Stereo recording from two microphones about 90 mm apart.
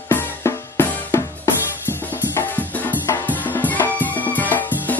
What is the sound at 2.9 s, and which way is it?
Music, 20° left (ahead or behind).